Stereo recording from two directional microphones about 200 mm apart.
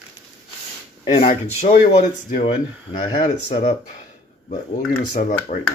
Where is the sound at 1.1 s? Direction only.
30° left (ahead or behind).